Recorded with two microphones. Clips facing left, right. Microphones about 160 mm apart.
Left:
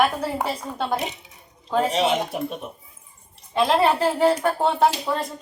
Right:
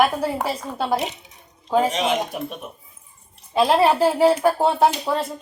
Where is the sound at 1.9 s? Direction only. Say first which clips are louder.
Even; 30° left (ahead or behind).